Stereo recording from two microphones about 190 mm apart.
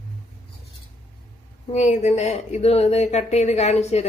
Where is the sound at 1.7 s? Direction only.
40° left (ahead or behind).